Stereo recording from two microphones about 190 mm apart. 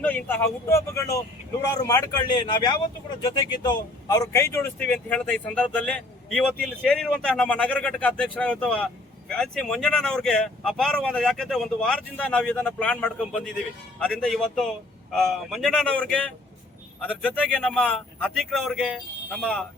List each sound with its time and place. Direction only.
0.0 s a man's voice: 10° left (ahead or behind)